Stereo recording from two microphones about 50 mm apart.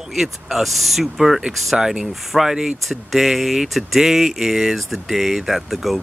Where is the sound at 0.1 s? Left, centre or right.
Centre.